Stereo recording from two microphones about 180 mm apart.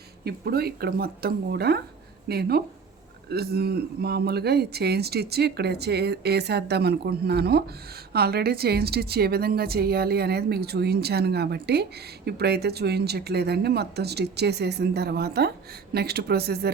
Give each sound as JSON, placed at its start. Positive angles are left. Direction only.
{"t": 0.3, "sound": "a woman's voice", "side_deg": -60}